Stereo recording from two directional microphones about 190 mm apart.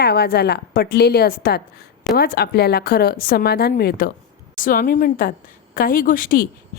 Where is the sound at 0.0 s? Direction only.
55° left (ahead or behind).